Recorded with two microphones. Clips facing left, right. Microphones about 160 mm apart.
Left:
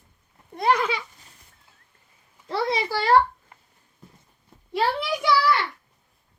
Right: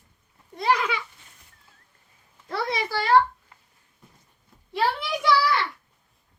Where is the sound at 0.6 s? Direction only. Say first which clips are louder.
Left 2 dB; 55° left (ahead or behind).